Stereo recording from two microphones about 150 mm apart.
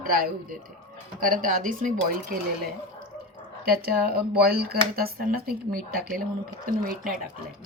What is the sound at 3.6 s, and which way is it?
A woman's voice, 90° right.